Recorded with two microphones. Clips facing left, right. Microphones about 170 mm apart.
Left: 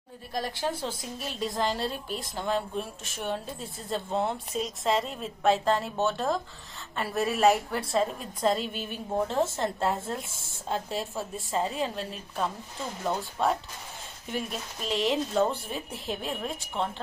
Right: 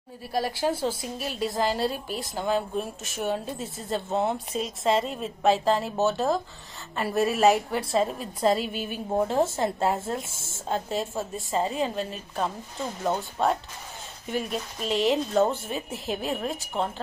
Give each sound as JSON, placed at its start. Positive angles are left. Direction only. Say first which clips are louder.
{"t": 0.3, "sound": "a woman's voice", "louder": "right 5 dB", "side_deg": -5}